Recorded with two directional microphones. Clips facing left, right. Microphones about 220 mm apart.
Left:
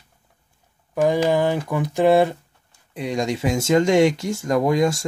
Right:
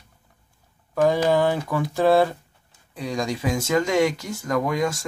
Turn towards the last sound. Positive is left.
turn(degrees=30)  # may be behind; listen again after turning